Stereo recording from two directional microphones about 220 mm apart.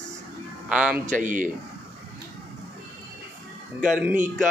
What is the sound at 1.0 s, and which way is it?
Speech, 35° right (ahead or behind).